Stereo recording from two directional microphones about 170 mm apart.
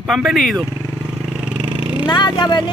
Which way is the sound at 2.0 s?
25° left (ahead or behind).